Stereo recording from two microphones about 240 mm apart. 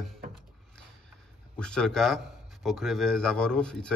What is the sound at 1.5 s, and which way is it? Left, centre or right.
Speech, centre.